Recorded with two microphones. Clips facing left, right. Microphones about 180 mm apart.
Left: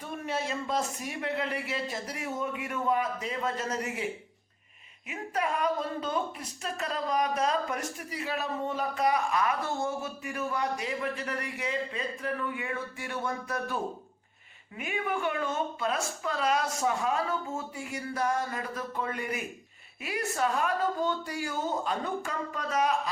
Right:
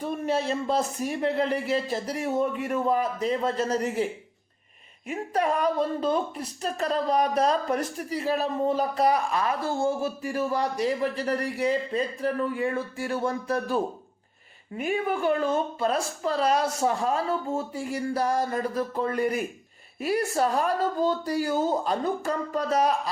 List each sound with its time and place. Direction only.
0.3 s speech: 35° right (ahead or behind)
5.0 s speech: 35° right (ahead or behind)
14.8 s speech: 35° right (ahead or behind)